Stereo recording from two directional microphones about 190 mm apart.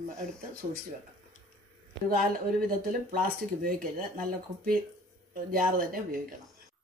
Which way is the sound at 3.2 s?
50° right (ahead or behind).